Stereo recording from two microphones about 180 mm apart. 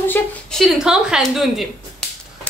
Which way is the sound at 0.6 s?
5° right (ahead or behind).